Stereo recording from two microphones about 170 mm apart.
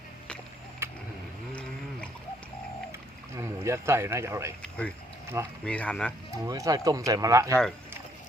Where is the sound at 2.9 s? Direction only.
15° right (ahead or behind).